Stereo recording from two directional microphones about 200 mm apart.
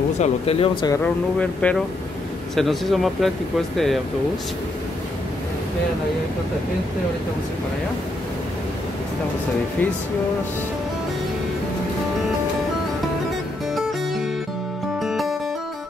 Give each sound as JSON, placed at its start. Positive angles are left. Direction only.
{"t": 0.2, "sound": "speech", "side_deg": 30}
{"t": 1.0, "sound": "speech", "side_deg": 5}
{"t": 15.0, "sound": "music", "side_deg": 0}